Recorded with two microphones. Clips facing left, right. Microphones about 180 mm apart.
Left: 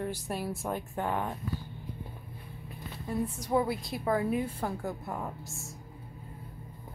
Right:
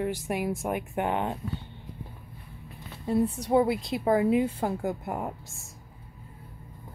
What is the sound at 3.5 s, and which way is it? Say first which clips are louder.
A woman's voice: right 4 dB; 25° right (ahead or behind).